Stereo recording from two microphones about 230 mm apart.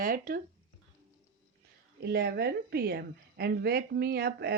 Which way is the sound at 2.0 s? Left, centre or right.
Right.